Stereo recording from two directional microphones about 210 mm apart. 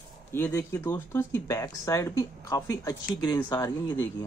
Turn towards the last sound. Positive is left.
turn(degrees=15)  # may be behind; listen again after turning